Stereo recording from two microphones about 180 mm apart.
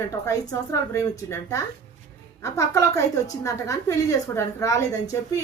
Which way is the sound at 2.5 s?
15° left (ahead or behind).